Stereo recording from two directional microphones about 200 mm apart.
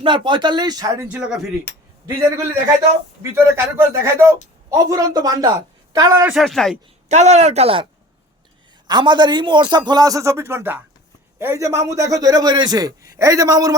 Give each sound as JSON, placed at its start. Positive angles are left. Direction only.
{"t": 0.0, "sound": "a man's voice", "side_deg": -25}
{"t": 1.0, "sound": "speech", "side_deg": -5}
{"t": 3.3, "sound": "a man's voice", "side_deg": -10}
{"t": 6.2, "sound": "speech", "side_deg": 0}
{"t": 7.1, "sound": "speech", "side_deg": -35}
{"t": 8.9, "sound": "a man's voice", "side_deg": -20}